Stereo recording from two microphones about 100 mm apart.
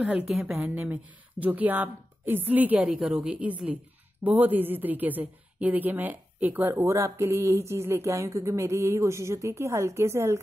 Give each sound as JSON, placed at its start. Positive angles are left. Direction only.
{"t": 0.0, "sound": "a woman's voice", "side_deg": -10}
{"t": 0.7, "sound": "a woman's voice", "side_deg": -15}